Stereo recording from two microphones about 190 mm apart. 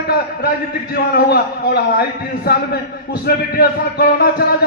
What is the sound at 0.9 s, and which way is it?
A man's voice, 55° left (ahead or behind).